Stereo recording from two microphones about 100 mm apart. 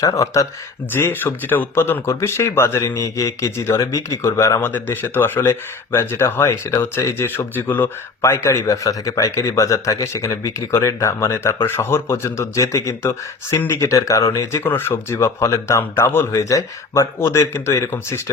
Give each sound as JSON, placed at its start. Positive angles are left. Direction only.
{"t": 0.0, "sound": "speech", "side_deg": 35}
{"t": 0.9, "sound": "speech", "side_deg": 20}
{"t": 14.6, "sound": "speech", "side_deg": 20}